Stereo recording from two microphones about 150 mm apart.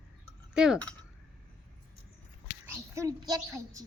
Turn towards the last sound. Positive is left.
turn(degrees=-20)  # may be behind; listen again after turning